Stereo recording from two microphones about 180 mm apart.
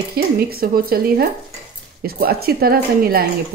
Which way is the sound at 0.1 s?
60° right (ahead or behind).